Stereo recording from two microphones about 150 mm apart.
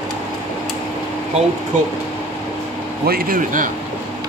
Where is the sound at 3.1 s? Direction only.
75° right (ahead or behind).